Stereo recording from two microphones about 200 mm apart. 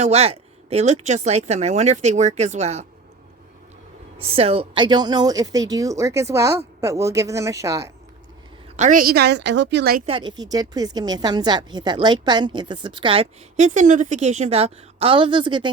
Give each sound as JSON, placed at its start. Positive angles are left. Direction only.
{"t": 0.0, "sound": "speech", "side_deg": -30}
{"t": 4.2, "sound": "a woman's voice", "side_deg": -30}
{"t": 8.7, "sound": "a woman's voice", "side_deg": -40}
{"t": 10.1, "sound": "a woman's voice", "side_deg": -25}